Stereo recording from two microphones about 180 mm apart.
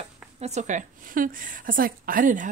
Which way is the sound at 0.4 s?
40° right (ahead or behind).